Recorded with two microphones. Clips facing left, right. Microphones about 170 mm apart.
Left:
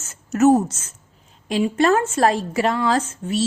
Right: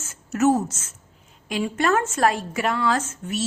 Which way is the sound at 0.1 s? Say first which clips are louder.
Left 5 dB; 35° left (ahead or behind).